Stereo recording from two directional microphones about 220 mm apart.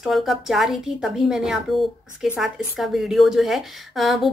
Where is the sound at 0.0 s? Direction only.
Centre (ahead or behind).